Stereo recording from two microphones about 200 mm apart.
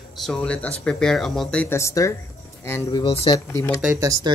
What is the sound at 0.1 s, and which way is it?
Speech, centre (ahead or behind).